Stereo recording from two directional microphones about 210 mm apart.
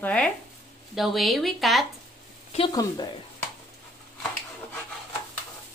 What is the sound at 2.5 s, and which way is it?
Speech, 20° left (ahead or behind).